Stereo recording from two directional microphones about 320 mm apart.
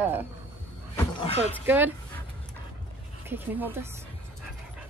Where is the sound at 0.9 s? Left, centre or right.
Centre.